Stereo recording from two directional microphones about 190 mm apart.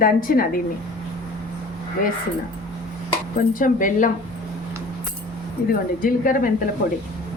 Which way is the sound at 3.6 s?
45° left (ahead or behind).